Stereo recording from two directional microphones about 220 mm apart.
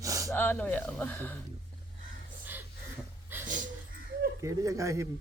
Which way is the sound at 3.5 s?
35° right (ahead or behind).